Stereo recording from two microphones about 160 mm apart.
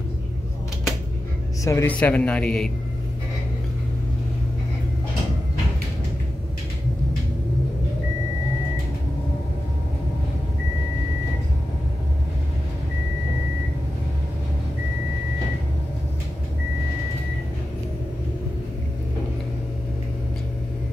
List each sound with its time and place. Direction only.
1.6 s a man's voice: 20° left (ahead or behind)